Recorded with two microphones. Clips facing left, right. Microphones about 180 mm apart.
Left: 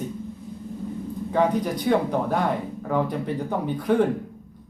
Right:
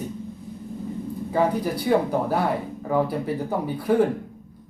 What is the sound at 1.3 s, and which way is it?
Speech, 10° right (ahead or behind).